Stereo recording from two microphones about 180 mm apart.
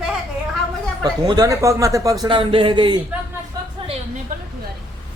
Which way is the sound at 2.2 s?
30° right (ahead or behind).